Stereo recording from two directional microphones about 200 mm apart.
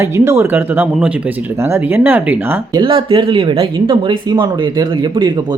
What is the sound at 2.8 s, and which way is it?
Speech, 25° right (ahead or behind).